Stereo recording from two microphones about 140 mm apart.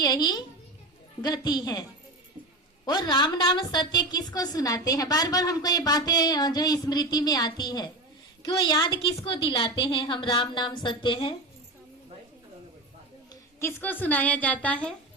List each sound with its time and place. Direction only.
0.0 s a woman's voice: 30° left (ahead or behind)
2.8 s a woman's voice: 30° left (ahead or behind)
13.6 s a woman's voice: 20° left (ahead or behind)